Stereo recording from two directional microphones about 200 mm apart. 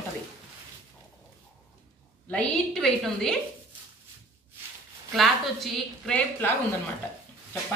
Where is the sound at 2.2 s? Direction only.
5° left (ahead or behind).